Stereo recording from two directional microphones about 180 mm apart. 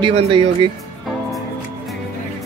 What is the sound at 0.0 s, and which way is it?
Speech, 30° right (ahead or behind).